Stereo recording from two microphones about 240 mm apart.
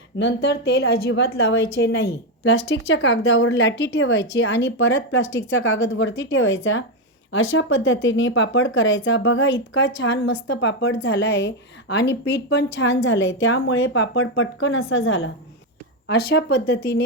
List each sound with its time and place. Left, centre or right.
0.4 s a woman's voice: left
16.0 s speech: left